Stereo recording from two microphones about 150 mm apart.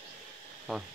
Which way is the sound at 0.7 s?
Centre (ahead or behind).